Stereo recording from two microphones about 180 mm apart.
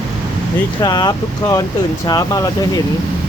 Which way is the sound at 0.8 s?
25° left (ahead or behind).